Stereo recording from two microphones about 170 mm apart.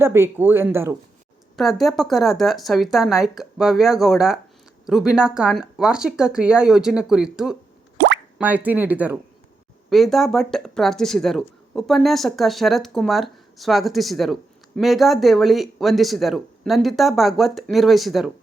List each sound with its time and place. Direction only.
0.0 s speech: 15° right (ahead or behind)
1.5 s speech: centre (ahead or behind)
7.9 s plop: 90° right
8.4 s speech: 10° right (ahead or behind)
9.9 s speech: centre (ahead or behind)